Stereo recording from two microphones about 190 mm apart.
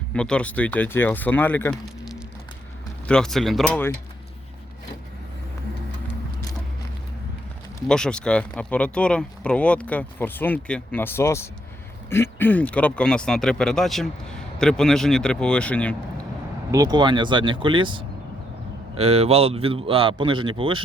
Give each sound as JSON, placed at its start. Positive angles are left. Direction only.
{"t": 0.1, "sound": "speech", "side_deg": 5}
{"t": 3.1, "sound": "speech", "side_deg": 5}
{"t": 7.9, "sound": "speech", "side_deg": 5}
{"t": 16.7, "sound": "a man's voice", "side_deg": -20}